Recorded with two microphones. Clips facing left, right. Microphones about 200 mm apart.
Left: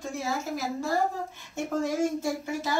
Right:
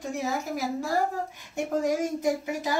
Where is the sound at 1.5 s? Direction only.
15° right (ahead or behind).